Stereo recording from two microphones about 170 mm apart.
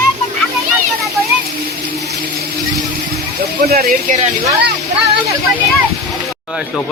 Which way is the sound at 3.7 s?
65° right (ahead or behind).